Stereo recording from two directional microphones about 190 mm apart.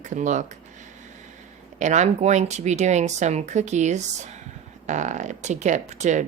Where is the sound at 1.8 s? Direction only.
40° right (ahead or behind).